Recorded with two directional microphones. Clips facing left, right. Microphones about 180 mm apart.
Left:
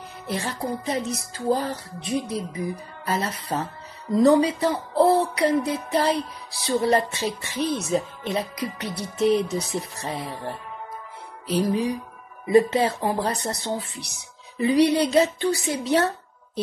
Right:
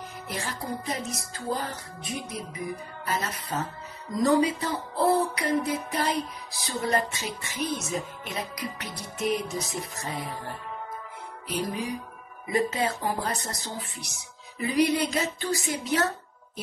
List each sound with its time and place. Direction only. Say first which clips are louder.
0.3 s speech: left 6 dB; 30° left (ahead or behind)
0.8 s music: left 6 dB; 30° left (ahead or behind)
11.6 s speech: left 8 dB; 25° left (ahead or behind)
12.4 s music: left 8 dB; 30° left (ahead or behind)
13.4 s speech: left 8 dB; 30° left (ahead or behind)
14.6 s music: left 5 dB; 35° left (ahead or behind)